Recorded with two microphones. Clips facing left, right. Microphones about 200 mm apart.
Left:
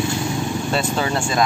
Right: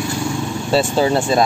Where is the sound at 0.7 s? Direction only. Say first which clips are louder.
Right 8 dB; 30° right (ahead or behind).